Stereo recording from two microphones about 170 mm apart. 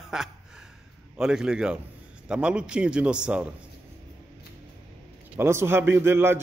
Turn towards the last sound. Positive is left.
turn(degrees=-15)  # may be behind; listen again after turning